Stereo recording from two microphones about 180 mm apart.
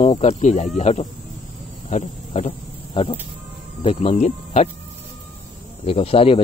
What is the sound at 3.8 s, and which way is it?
Speech, 35° left (ahead or behind).